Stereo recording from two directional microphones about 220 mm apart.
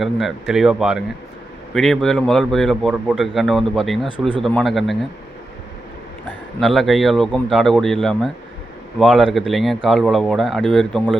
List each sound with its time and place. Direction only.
0.0 s a man's voice: centre (ahead or behind)
6.6 s a man's voice: centre (ahead or behind)